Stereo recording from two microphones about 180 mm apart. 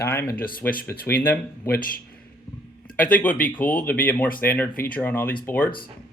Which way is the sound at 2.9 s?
10° left (ahead or behind).